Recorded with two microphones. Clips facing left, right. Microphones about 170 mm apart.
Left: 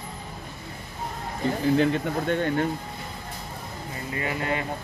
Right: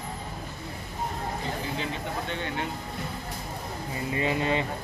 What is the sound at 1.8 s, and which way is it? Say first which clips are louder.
Speech: left 9 dB; 50° left (ahead or behind).